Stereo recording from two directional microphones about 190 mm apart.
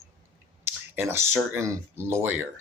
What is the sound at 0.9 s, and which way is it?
Speech, 10° right (ahead or behind).